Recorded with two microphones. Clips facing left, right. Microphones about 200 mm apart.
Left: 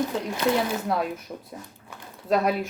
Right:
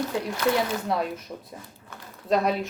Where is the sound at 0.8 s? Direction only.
Centre (ahead or behind).